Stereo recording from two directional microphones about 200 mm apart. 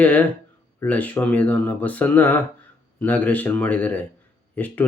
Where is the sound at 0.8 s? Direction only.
10° left (ahead or behind).